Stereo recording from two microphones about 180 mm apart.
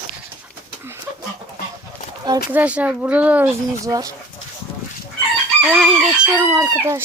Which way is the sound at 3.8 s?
20° right (ahead or behind).